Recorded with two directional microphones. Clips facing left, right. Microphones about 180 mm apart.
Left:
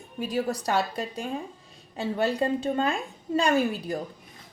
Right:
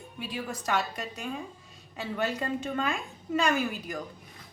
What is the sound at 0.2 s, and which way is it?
A woman's voice, 40° left (ahead or behind).